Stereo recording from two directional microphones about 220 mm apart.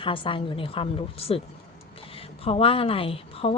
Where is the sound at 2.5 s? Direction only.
25° left (ahead or behind).